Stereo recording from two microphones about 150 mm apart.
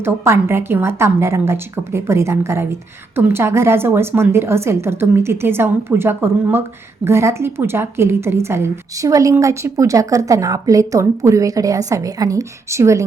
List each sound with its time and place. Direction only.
0.0 s a woman's voice: 15° right (ahead or behind)